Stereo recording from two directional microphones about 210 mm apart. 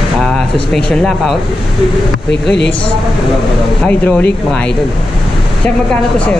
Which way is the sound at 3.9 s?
5° left (ahead or behind).